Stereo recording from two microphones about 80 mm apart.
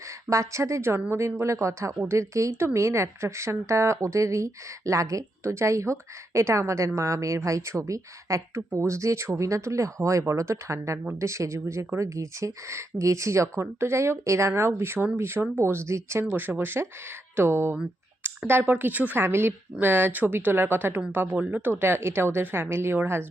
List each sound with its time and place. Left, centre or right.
0.3 s speech: right
16.3 s a woman's voice: right